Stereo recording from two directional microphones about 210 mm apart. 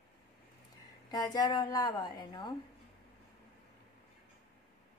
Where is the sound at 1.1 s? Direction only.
20° left (ahead or behind).